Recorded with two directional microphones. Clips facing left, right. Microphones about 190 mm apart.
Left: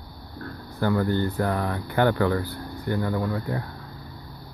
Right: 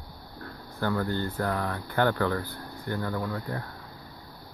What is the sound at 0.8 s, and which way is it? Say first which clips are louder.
Speech: left 5 dB; 15° left (ahead or behind).